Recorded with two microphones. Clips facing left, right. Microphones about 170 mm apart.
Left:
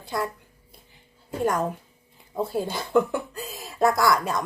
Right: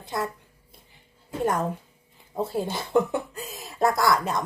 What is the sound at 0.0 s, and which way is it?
Speech, 25° right (ahead or behind).